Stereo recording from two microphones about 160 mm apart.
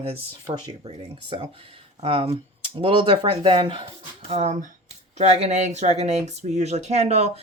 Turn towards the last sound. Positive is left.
turn(degrees=-40)  # may be behind; listen again after turning